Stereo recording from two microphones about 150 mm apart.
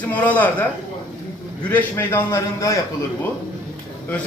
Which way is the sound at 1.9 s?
15° left (ahead or behind).